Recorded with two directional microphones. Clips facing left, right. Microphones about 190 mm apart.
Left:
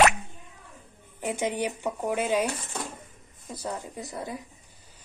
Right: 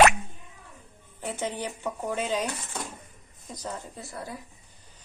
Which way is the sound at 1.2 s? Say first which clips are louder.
Left 4 dB; 15° left (ahead or behind).